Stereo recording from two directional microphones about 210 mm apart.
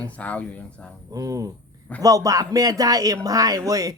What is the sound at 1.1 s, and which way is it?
Speech, 15° right (ahead or behind).